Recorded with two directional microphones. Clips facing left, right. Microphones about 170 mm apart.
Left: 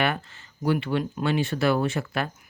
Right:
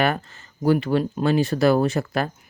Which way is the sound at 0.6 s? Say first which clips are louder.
Right 5 dB; 40° right (ahead or behind).